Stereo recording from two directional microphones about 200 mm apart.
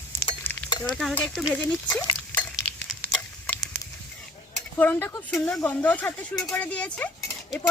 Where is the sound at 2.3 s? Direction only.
5° left (ahead or behind).